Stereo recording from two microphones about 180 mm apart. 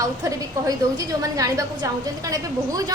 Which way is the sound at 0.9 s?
20° right (ahead or behind).